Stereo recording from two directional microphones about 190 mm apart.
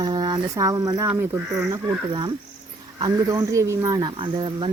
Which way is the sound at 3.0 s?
20° right (ahead or behind).